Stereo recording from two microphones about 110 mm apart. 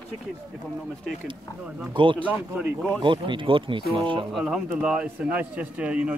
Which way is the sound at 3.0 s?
45° right (ahead or behind).